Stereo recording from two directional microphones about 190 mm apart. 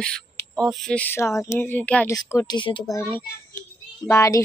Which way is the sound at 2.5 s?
25° left (ahead or behind).